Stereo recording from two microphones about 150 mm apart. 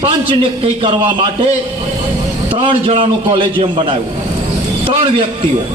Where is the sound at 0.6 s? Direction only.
35° right (ahead or behind).